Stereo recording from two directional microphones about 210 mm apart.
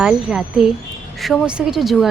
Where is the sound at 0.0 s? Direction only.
5° right (ahead or behind).